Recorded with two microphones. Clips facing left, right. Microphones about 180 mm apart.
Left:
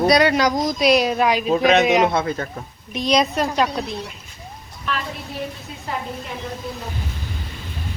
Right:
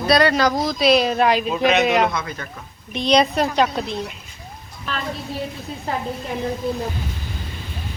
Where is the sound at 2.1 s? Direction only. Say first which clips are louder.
Left 6 dB; 30° left (ahead or behind).